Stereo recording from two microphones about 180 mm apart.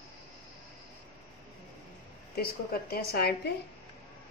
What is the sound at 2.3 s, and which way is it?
A woman's voice, 55° left (ahead or behind).